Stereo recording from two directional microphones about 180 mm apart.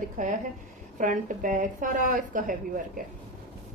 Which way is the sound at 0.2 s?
45° right (ahead or behind).